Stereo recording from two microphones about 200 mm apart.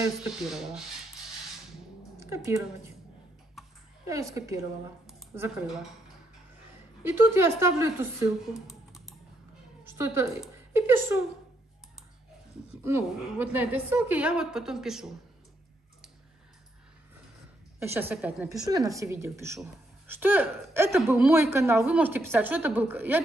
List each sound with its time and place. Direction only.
0.0 s rub: 5° right (ahead or behind)
2.1 s speech: 15° right (ahead or behind)
3.6 s a sound: centre (ahead or behind)
4.1 s a woman's voice: 15° right (ahead or behind)
5.0 s a sound: 10° right (ahead or behind)
7.0 s a woman's voice: 10° right (ahead or behind)
8.5 s typing: centre (ahead or behind)
9.8 s a woman's voice: 15° right (ahead or behind)
12.8 s a woman's voice: 10° right (ahead or behind)
17.8 s a woman's voice: 10° right (ahead or behind)
18.5 s a woman's voice: 20° right (ahead or behind)